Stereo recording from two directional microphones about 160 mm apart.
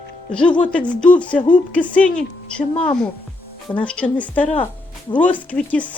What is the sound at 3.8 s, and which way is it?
Speech, 5° left (ahead or behind).